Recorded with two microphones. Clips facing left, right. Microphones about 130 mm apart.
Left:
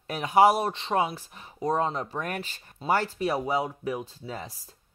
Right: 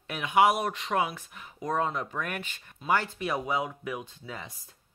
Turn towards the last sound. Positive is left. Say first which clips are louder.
# left 4 dB
turn(degrees=35)  # may be behind; listen again after turning